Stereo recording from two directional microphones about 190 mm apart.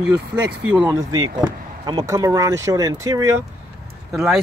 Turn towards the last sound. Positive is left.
turn(degrees=0)  # may be behind; listen again after turning